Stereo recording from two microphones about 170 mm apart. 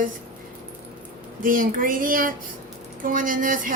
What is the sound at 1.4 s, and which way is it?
A woman's voice, 50° right (ahead or behind).